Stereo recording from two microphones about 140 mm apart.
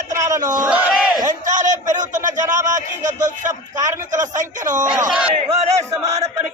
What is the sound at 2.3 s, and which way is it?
Speech, 65° right (ahead or behind).